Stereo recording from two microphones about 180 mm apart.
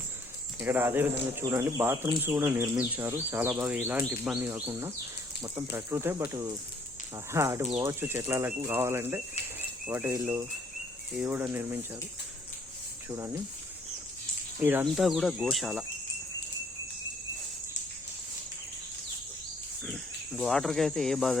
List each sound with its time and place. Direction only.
0.6 s speech: 10° right (ahead or behind)
13.1 s speech: 15° right (ahead or behind)
14.6 s speech: 10° right (ahead or behind)
19.8 s speech: centre (ahead or behind)